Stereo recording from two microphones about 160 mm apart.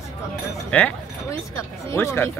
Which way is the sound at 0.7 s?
15° left (ahead or behind).